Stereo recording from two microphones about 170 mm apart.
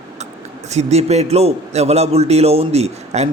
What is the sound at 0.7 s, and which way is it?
A man's voice, 40° right (ahead or behind).